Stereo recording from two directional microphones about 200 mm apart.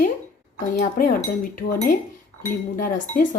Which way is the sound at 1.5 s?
45° left (ahead or behind).